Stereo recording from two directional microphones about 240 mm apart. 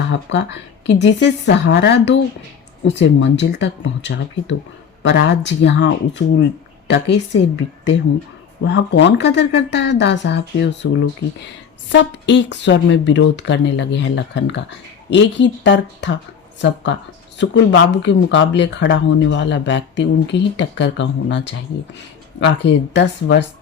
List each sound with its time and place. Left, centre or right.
0.1 s speech: left
8.6 s speech: left